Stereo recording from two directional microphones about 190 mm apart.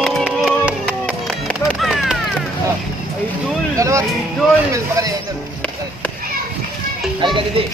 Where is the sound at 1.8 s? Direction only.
Centre (ahead or behind).